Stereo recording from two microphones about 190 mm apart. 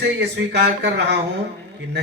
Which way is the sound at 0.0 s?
60° right (ahead or behind).